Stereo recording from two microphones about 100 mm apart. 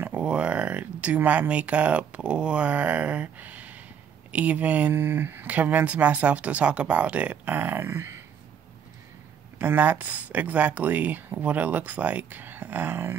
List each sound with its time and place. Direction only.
0.0 s speech: 10° right (ahead or behind)
9.6 s speech: 20° right (ahead or behind)